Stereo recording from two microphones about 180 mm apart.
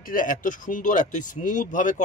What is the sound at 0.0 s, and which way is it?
Speech, 50° left (ahead or behind).